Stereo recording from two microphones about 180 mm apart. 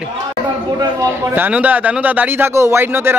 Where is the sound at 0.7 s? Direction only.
15° right (ahead or behind).